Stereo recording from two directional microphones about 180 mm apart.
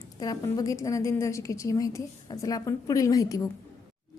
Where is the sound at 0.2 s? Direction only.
20° left (ahead or behind).